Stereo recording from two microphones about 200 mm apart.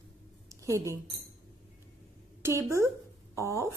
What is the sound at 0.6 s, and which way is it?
Speech, 15° right (ahead or behind).